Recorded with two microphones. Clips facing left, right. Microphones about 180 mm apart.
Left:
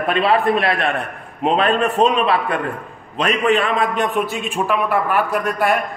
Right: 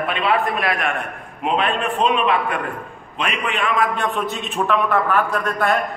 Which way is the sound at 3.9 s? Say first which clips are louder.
Left 3 dB; 15° left (ahead or behind).